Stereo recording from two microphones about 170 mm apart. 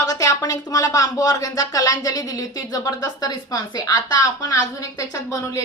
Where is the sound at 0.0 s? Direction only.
20° left (ahead or behind).